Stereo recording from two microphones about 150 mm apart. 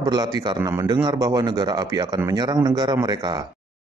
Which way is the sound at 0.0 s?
30° right (ahead or behind).